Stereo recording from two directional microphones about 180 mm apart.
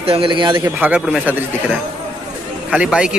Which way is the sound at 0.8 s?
10° right (ahead or behind).